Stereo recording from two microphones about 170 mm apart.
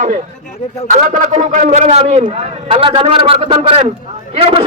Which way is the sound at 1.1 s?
45° right (ahead or behind).